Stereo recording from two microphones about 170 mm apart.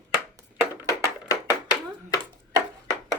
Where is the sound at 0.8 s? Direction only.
20° left (ahead or behind).